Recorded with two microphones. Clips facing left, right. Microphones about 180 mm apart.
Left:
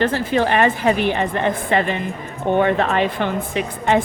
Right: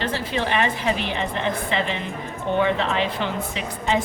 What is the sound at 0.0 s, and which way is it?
Speech, 50° left (ahead or behind).